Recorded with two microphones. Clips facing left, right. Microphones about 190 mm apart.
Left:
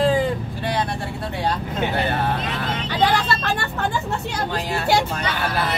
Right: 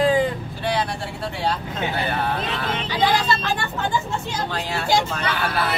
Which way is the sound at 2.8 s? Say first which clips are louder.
Left 1 dB; 60° left (ahead or behind).